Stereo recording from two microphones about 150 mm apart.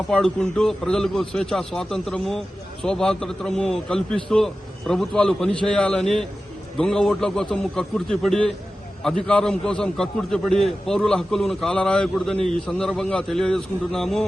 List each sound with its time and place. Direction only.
0.1 s a man's voice: 5° left (ahead or behind)